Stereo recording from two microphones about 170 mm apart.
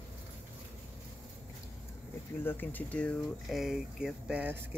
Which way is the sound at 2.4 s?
10° left (ahead or behind).